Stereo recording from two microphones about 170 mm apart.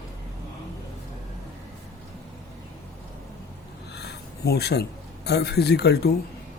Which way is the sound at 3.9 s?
75° left (ahead or behind).